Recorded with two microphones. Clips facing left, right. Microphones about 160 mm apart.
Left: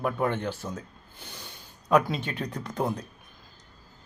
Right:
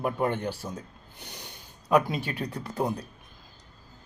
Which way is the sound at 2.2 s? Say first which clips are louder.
Even; 40° right (ahead or behind).